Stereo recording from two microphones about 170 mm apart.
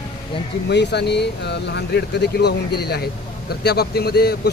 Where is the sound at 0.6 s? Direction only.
85° left.